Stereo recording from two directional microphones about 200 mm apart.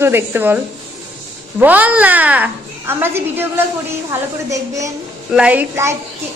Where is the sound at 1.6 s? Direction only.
10° right (ahead or behind).